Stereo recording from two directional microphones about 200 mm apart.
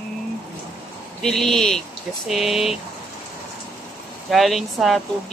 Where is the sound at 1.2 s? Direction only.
Centre (ahead or behind).